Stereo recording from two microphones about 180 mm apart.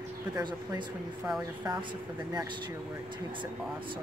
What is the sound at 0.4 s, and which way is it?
Speech, 25° right (ahead or behind).